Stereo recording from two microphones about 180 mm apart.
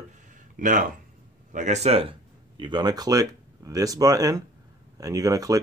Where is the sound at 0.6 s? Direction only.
45° right (ahead or behind).